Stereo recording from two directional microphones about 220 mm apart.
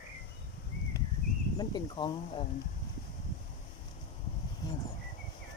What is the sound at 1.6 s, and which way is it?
Speech, 20° left (ahead or behind).